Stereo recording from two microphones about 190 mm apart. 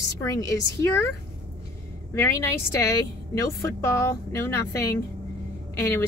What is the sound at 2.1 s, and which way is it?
Speech, 15° left (ahead or behind).